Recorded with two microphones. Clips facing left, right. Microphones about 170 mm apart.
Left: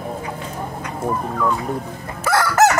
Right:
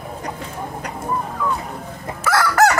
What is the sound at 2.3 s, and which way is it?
Chicken, 25° left (ahead or behind).